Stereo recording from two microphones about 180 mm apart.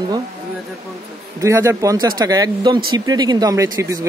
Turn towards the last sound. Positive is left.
turn(degrees=-15)  # may be behind; listen again after turning